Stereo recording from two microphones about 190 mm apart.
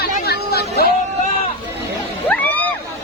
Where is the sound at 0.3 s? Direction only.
55° left (ahead or behind).